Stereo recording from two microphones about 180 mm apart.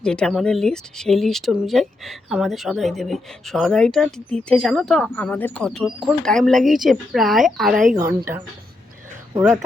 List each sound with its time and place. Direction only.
0.0 s speech: 5° left (ahead or behind)
7.9 s speech: 15° right (ahead or behind)